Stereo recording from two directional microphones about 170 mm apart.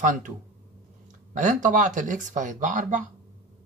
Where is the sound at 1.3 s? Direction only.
50° right (ahead or behind).